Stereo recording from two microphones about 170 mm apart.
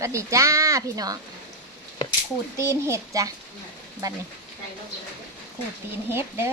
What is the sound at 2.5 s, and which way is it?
Speech, 15° right (ahead or behind).